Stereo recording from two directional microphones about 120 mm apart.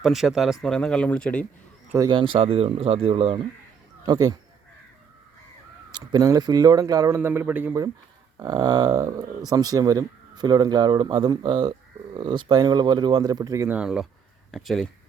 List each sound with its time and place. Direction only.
0.0 s speech: centre (ahead or behind)
2.1 s speech: 45° right (ahead or behind)
4.0 s speech: 35° right (ahead or behind)
5.9 s speech: 35° right (ahead or behind)
7.2 s a man's voice: 15° right (ahead or behind)
8.4 s speech: 35° right (ahead or behind)
13.7 s speech: 10° right (ahead or behind)